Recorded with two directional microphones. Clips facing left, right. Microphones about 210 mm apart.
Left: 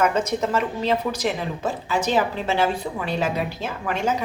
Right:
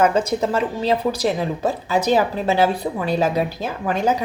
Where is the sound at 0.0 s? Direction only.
30° right (ahead or behind).